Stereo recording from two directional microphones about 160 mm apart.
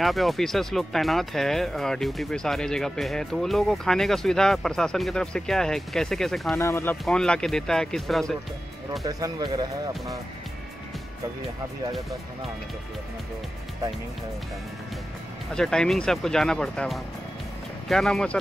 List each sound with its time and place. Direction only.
0.0 s speech: centre (ahead or behind)
6.5 s speech: 15° left (ahead or behind)
7.1 s speech: 5° left (ahead or behind)
9.0 s speech: 25° right (ahead or behind)
15.5 s speech: 5° left (ahead or behind)